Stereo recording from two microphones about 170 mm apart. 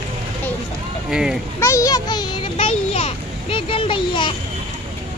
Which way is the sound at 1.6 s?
20° left (ahead or behind).